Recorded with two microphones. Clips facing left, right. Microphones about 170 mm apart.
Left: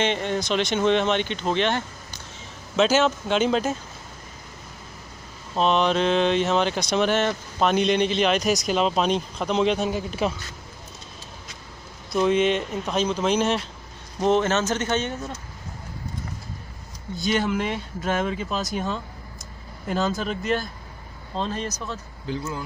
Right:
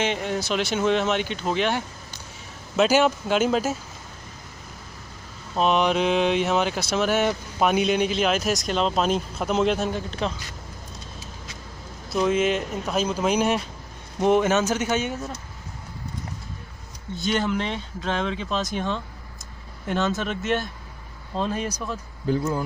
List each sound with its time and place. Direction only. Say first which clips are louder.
0.0 s speech: left 1 dB; 5° right (ahead or behind)
5.5 s speech: even; 10° right (ahead or behind); by 10.3 s 5° left (ahead or behind)
12.1 s speech: left 1 dB; 5° right (ahead or behind)
17.2 s speech: left 1 dB; 5° left (ahead or behind)
22.3 s speech: right 6 dB; 45° right (ahead or behind)